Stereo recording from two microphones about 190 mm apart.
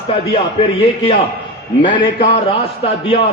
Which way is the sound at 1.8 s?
25° left (ahead or behind).